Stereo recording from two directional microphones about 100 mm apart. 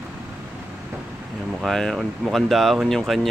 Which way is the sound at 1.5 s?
5° left (ahead or behind).